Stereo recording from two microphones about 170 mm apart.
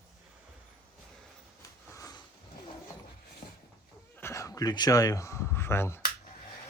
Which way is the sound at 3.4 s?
35° left (ahead or behind).